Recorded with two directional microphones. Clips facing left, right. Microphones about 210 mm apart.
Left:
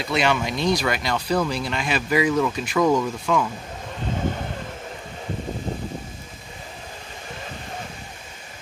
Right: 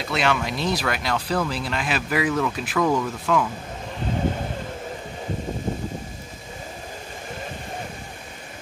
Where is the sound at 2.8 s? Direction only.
10° left (ahead or behind).